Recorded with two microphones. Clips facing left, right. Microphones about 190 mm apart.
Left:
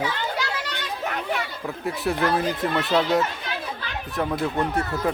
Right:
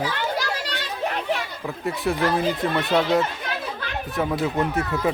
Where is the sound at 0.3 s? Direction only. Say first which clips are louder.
Right 2 dB; 30° right (ahead or behind).